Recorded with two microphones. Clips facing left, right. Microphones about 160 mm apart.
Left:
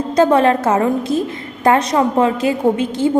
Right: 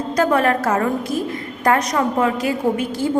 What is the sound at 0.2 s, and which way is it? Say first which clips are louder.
A woman's voice: left 5 dB; 25° left (ahead or behind).